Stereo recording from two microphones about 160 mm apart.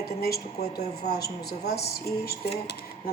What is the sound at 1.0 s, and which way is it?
Speech, 90° left.